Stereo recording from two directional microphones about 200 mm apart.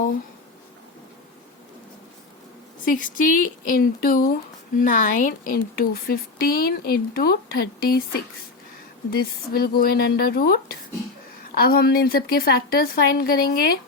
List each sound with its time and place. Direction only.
2.8 s speech: 40° left (ahead or behind)
9.0 s speech: 50° left (ahead or behind)